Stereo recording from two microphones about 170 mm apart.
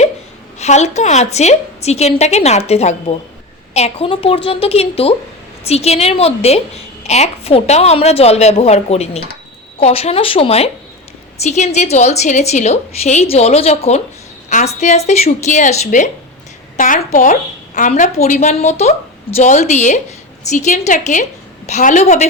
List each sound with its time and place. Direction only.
0.6 s a woman's voice: 40° left (ahead or behind)